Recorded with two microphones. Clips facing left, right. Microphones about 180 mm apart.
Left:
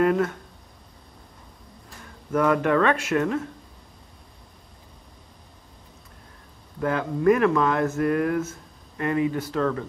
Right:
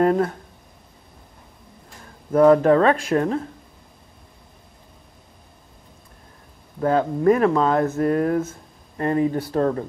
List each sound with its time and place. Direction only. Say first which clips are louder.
0.0 s speech: right 2 dB; 35° right (ahead or behind)
2.3 s speech: right 7 dB; 35° right (ahead or behind)
6.8 s speech: right 4 dB; 30° right (ahead or behind)